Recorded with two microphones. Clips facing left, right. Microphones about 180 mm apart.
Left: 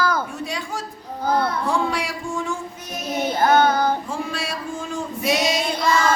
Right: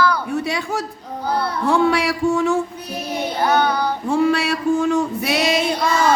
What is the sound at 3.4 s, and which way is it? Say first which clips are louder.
Child singing: left 1 dB; 45° left (ahead or behind).